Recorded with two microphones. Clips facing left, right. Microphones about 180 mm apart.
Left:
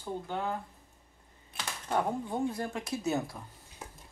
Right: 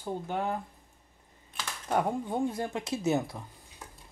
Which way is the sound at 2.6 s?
20° right (ahead or behind).